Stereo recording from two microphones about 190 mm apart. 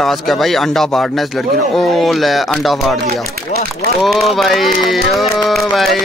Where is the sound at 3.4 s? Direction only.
55° left (ahead or behind).